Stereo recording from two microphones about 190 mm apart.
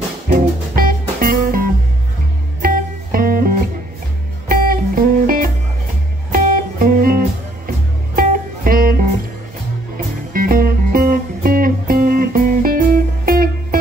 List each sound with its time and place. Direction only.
0.3 s music: 50° right (ahead or behind)
10.3 s music: 50° right (ahead or behind)